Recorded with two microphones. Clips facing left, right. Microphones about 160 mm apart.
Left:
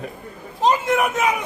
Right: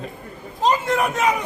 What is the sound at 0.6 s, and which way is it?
Speech, 15° left (ahead or behind).